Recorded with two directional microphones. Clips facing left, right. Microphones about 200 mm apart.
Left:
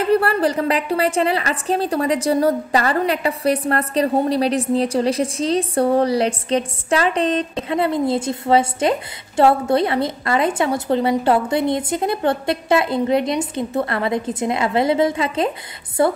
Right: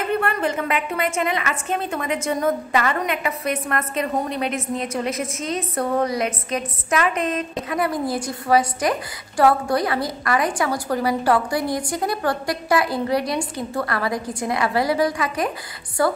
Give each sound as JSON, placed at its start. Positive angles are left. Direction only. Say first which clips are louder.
{"t": 0.0, "sound": "a woman's voice", "louder": "left 5 dB", "side_deg": 35}